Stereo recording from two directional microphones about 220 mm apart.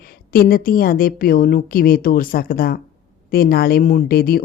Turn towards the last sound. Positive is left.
turn(degrees=40)  # may be behind; listen again after turning